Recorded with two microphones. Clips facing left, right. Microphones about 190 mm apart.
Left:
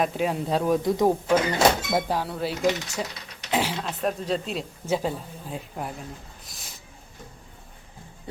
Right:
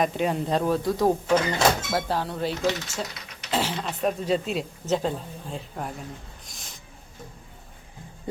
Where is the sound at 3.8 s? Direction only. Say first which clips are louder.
Right 1 dB; centre (ahead or behind).